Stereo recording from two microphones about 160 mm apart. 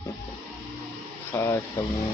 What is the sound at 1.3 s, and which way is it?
Speech, 20° left (ahead or behind).